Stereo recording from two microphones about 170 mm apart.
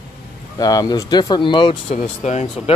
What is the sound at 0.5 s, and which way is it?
Speech, 20° left (ahead or behind).